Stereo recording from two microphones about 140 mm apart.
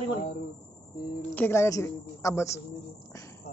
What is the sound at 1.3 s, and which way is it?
A woman's voice, 15° left (ahead or behind).